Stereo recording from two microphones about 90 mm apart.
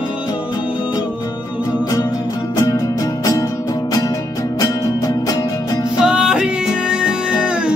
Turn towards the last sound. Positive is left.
turn(degrees=-10)  # may be behind; listen again after turning